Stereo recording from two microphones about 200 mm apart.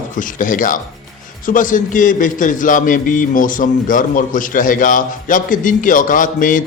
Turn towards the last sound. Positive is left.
turn(degrees=40)  # may be behind; listen again after turning